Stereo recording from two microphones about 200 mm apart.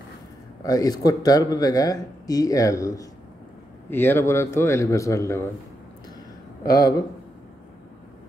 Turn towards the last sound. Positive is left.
turn(degrees=20)  # may be behind; listen again after turning